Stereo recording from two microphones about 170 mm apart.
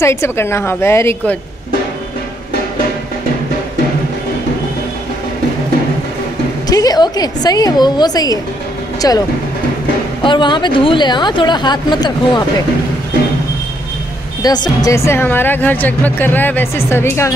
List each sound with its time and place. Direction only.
0.0 s a woman's voice: 15° left (ahead or behind)
6.7 s a woman's voice: 20° left (ahead or behind)
10.2 s a woman's voice: 25° left (ahead or behind)
14.4 s a woman's voice: 25° left (ahead or behind)